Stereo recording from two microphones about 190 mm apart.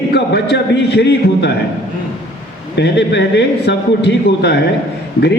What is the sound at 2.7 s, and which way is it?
Speech, 65° left (ahead or behind).